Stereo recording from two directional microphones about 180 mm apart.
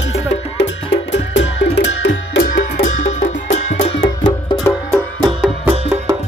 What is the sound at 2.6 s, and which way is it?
Music, 45° left (ahead or behind).